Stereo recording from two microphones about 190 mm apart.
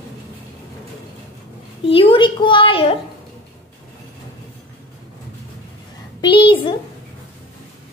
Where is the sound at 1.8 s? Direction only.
30° left (ahead or behind).